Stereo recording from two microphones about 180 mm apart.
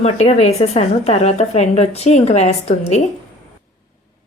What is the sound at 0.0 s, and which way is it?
A woman's voice, 35° left (ahead or behind).